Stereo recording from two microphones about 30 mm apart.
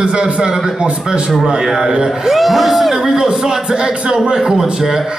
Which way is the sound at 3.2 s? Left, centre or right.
Right.